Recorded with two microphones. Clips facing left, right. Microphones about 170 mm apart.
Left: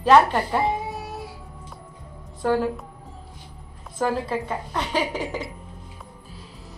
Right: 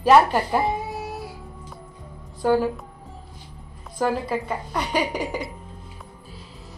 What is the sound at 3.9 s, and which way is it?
A woman's voice, centre (ahead or behind).